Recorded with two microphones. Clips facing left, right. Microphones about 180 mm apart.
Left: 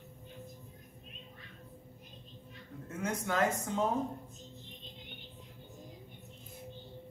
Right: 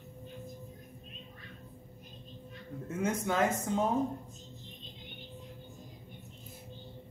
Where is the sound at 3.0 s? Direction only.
20° right (ahead or behind).